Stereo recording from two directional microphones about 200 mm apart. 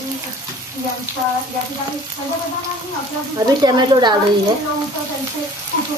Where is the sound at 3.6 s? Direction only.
20° right (ahead or behind).